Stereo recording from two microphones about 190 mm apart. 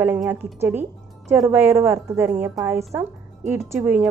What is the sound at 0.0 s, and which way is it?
Speech, 10° right (ahead or behind).